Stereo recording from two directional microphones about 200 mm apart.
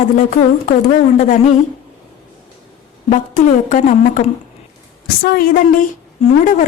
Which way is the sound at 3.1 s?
40° left (ahead or behind).